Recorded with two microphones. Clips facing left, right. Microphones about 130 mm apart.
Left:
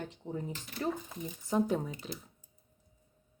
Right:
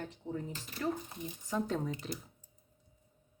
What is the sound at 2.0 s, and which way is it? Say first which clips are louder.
Speech: right 1 dB; centre (ahead or behind).